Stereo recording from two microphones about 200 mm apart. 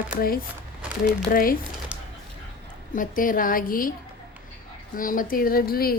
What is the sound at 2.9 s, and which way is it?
A woman's voice, 40° left (ahead or behind).